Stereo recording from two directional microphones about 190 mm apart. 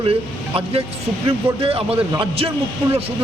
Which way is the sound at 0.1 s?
30° right (ahead or behind).